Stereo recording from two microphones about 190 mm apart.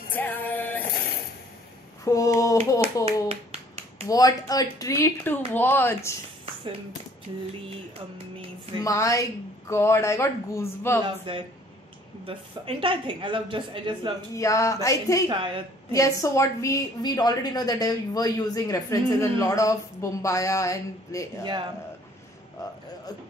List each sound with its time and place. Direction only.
0.1 s music: 10° left (ahead or behind)
2.0 s a sound: 15° left (ahead or behind)
4.1 s a woman's voice: 20° left (ahead or behind)
8.8 s a woman's voice: 15° left (ahead or behind)
11.3 s a woman's voice: 25° right (ahead or behind)
14.3 s a woman's voice: 15° left (ahead or behind)
15.2 s a woman's voice: 25° right (ahead or behind)
15.9 s a woman's voice: 15° left (ahead or behind)
21.5 s a woman's voice: 25° right (ahead or behind)